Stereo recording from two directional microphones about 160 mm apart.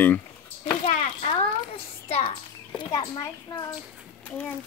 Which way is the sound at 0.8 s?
40° left (ahead or behind).